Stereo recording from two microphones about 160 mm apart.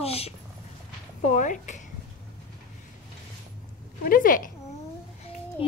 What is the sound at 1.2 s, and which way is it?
Speech, 50° left (ahead or behind).